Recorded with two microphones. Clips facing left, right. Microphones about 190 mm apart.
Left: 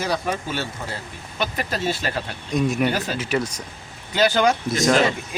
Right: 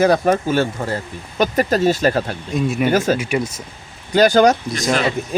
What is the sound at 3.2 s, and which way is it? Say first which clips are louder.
Speech: right 3 dB; 10° right (ahead or behind).